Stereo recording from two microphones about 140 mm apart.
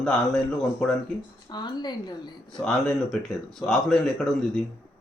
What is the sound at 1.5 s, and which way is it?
Speech, 30° left (ahead or behind).